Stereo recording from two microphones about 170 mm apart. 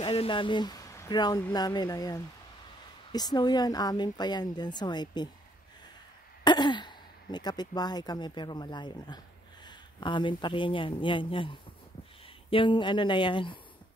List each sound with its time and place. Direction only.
0.0 s speech: 30° left (ahead or behind)
6.4 s speech: 25° left (ahead or behind)